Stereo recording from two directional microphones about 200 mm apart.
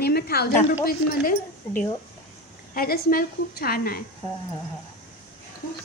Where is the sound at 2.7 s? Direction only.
45° left (ahead or behind).